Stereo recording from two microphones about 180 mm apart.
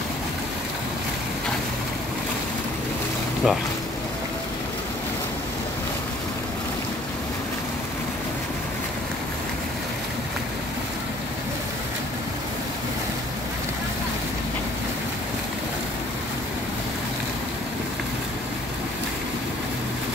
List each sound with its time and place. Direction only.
3.4 s speech: centre (ahead or behind)